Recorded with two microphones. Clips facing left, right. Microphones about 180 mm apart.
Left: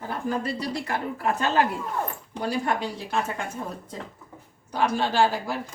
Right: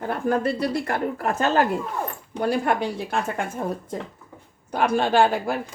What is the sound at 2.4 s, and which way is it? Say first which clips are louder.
A woman's voice: right 4 dB; 55° right (ahead or behind).